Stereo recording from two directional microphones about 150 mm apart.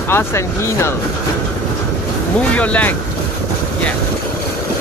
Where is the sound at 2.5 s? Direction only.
10° left (ahead or behind).